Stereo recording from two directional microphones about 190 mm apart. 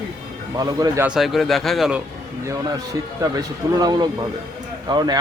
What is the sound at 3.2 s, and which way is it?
A man's voice, 20° right (ahead or behind).